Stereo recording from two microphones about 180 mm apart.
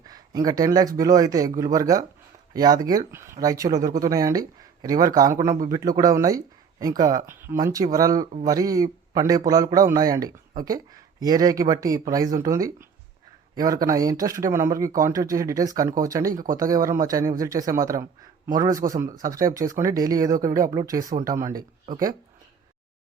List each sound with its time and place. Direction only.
0.1 s speech: 20° right (ahead or behind)
16.3 s speech: 50° right (ahead or behind)
16.6 s speech: 20° right (ahead or behind)